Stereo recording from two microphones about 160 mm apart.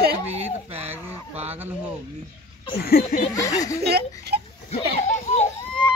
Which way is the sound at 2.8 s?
70° left (ahead or behind).